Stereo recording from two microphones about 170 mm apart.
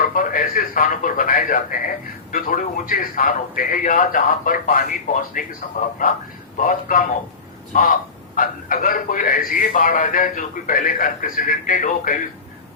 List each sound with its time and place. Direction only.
0.0 s speech: 50° left (ahead or behind)